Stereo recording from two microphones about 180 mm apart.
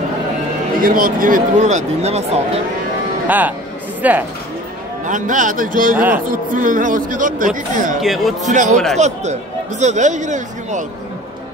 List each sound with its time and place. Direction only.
0.8 s speech: 50° right (ahead or behind); by 2.6 s 35° right (ahead or behind)
3.3 s speech: 10° right (ahead or behind)
5.0 s speech: 45° right (ahead or behind)
5.9 s speech: 10° right (ahead or behind)
6.2 s speech: 50° right (ahead or behind)
8.0 s speech: centre (ahead or behind)
8.5 s speech: 40° right (ahead or behind)